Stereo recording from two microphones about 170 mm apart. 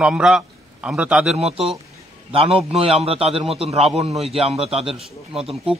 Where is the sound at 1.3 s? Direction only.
35° right (ahead or behind).